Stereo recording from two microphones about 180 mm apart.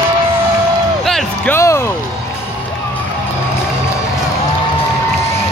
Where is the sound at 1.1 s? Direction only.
Centre (ahead or behind).